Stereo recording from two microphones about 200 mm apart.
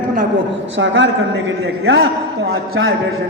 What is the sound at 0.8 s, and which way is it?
A man's voice, 65° right (ahead or behind).